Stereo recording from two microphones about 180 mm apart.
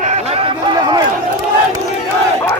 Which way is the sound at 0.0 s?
35° right (ahead or behind).